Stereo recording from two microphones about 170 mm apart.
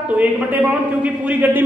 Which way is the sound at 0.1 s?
10° right (ahead or behind).